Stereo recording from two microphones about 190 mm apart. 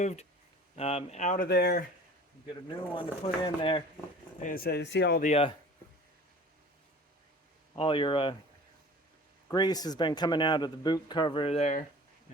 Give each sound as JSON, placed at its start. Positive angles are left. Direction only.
{"t": 0.0, "sound": "speech", "side_deg": 35}
{"t": 1.5, "sound": "speech", "side_deg": 60}
{"t": 2.9, "sound": "a man's voice", "side_deg": 30}
{"t": 4.4, "sound": "speech", "side_deg": 45}
{"t": 5.2, "sound": "speech", "side_deg": 30}
{"t": 7.8, "sound": "a man's voice", "side_deg": 25}
{"t": 9.5, "sound": "a man's voice", "side_deg": 20}